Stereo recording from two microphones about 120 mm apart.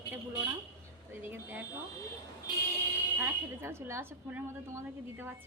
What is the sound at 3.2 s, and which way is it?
A woman's voice, 20° right (ahead or behind).